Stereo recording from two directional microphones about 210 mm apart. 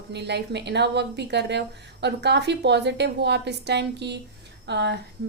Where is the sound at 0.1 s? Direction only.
55° right (ahead or behind).